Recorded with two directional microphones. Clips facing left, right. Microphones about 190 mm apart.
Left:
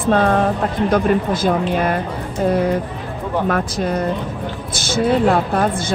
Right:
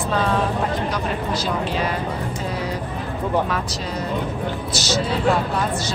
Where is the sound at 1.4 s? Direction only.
55° left (ahead or behind).